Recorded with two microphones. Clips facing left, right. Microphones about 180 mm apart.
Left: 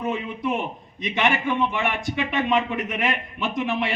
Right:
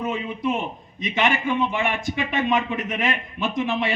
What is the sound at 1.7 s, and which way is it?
A man's voice, 60° left (ahead or behind).